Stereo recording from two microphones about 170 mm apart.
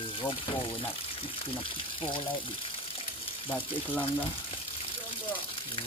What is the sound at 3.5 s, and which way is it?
Speech, 10° left (ahead or behind).